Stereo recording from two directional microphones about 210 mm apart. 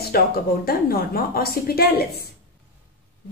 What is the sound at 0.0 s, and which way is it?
A woman's voice, 45° left (ahead or behind).